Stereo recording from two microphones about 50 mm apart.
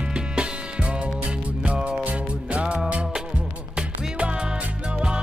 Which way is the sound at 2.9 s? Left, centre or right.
Right.